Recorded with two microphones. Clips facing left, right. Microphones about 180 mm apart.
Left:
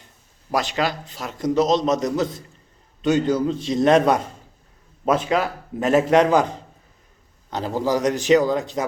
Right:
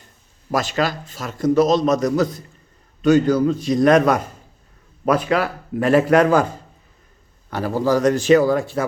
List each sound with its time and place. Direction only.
0.5 s a man's voice: 20° left (ahead or behind)